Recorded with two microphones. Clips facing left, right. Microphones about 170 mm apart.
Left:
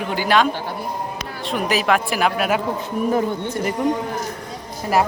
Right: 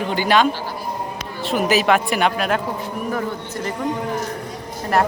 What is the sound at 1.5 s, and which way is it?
Speech, centre (ahead or behind).